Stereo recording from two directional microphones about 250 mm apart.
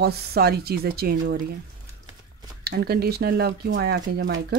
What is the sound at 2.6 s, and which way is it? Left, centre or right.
Speech, right.